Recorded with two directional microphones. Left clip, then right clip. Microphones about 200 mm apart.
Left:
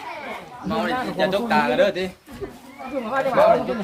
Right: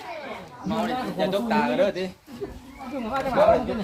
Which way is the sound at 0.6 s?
50° left (ahead or behind).